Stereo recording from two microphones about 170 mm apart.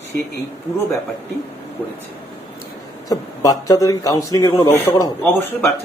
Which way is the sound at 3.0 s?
20° left (ahead or behind).